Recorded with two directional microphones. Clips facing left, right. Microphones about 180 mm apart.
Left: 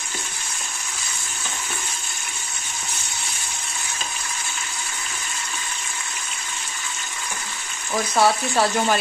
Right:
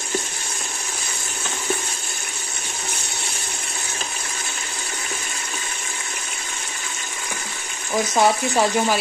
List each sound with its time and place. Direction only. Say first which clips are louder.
8.1 s speech: even; 20° right (ahead or behind)